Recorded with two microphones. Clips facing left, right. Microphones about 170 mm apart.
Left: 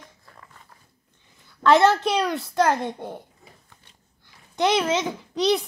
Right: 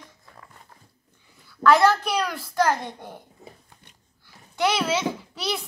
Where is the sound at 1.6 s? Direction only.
25° left (ahead or behind).